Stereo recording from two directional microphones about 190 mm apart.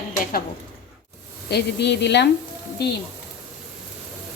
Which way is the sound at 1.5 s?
60° left (ahead or behind).